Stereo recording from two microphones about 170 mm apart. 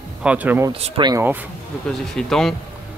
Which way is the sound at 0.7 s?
35° right (ahead or behind).